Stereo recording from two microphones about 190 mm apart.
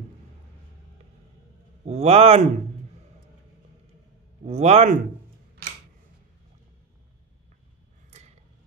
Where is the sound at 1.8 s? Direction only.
35° right (ahead or behind).